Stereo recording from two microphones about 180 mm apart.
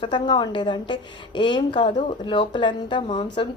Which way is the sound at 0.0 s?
25° left (ahead or behind).